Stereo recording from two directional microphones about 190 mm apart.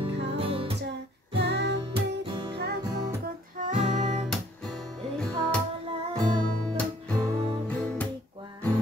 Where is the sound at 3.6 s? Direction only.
40° right (ahead or behind).